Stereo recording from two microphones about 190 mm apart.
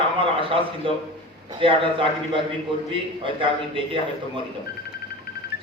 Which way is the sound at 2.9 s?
25° right (ahead or behind).